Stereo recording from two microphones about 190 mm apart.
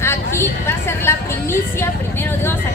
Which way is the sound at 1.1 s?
15° left (ahead or behind).